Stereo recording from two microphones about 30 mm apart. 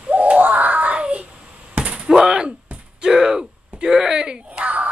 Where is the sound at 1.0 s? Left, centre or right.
Right.